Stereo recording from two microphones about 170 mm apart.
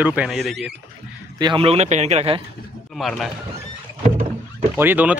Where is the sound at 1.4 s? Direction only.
30° right (ahead or behind).